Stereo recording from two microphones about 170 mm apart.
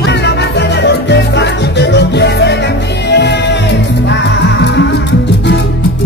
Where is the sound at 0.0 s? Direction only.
80° left.